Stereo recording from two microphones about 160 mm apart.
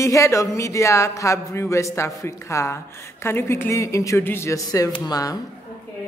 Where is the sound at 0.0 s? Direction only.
20° left (ahead or behind).